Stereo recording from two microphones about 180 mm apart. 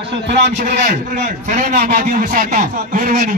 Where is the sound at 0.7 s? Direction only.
40° right (ahead or behind).